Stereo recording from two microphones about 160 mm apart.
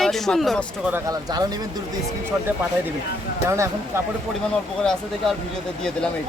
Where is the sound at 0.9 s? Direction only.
25° right (ahead or behind).